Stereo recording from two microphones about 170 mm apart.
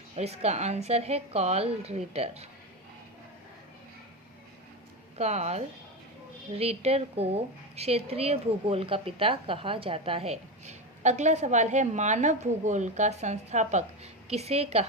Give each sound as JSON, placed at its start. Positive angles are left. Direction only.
{"t": 0.2, "sound": "a woman's voice", "side_deg": -40}
{"t": 5.1, "sound": "a woman's voice", "side_deg": -40}